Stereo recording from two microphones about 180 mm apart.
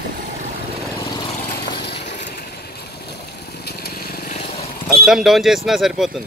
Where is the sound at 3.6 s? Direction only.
60° left (ahead or behind).